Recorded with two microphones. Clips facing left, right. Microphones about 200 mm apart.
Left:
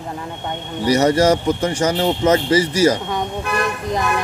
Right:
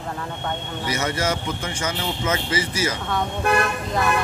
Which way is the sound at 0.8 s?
40° left (ahead or behind).